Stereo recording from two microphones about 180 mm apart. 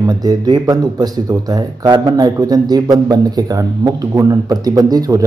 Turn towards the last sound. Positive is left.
turn(degrees=-20)  # may be behind; listen again after turning